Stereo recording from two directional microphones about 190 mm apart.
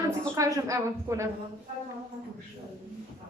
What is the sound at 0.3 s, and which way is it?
Speech, 15° right (ahead or behind).